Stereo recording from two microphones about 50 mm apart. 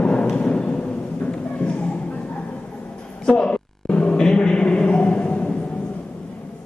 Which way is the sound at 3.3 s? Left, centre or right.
Centre.